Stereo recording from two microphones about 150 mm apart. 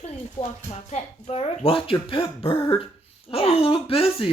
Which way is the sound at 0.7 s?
45° left (ahead or behind).